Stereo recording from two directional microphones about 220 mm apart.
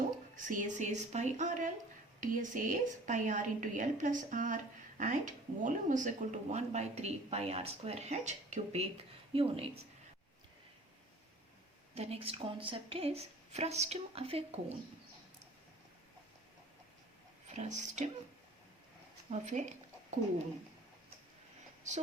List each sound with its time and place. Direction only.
0.3 s a woman's voice: 35° right (ahead or behind)
11.9 s speech: 25° right (ahead or behind)
17.5 s a woman's voice: 30° right (ahead or behind)
19.3 s speech: 35° right (ahead or behind)